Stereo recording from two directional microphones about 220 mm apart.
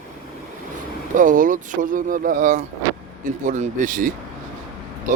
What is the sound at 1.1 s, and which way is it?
Speech, 35° right (ahead or behind).